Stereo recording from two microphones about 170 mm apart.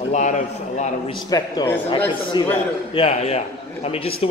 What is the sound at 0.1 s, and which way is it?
A man's voice, 45° left (ahead or behind).